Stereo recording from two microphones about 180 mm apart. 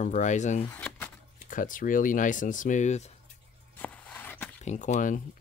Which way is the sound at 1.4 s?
45° left (ahead or behind).